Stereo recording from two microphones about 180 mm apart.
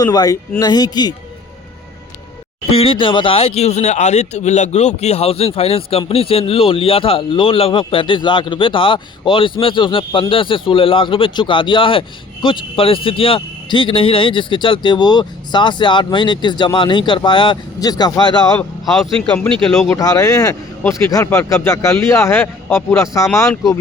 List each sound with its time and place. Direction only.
0.0 s speech: 20° left (ahead or behind)
2.7 s speech: 30° left (ahead or behind)
19.6 s speech: 5° left (ahead or behind)
20.0 s a man's voice: 20° left (ahead or behind)